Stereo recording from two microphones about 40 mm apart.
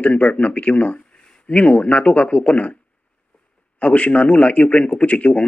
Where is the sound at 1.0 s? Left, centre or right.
Left.